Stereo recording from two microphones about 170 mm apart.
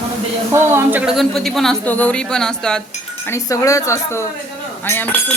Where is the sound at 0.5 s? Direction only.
15° right (ahead or behind); by 2.8 s 5° left (ahead or behind).